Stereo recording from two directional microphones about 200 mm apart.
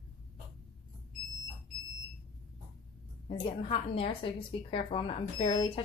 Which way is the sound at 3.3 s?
25° left (ahead or behind).